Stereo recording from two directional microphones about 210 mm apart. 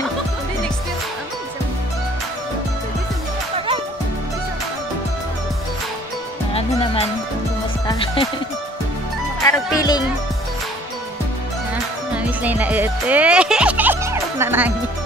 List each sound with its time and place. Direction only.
3.5 s music: 25° right (ahead or behind)
6.5 s music: 30° left (ahead or behind)
9.4 s music: 15° left (ahead or behind)
12.4 s music: 5° right (ahead or behind)